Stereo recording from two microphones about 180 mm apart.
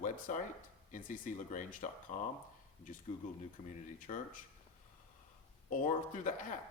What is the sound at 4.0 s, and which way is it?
Speech, 45° left (ahead or behind).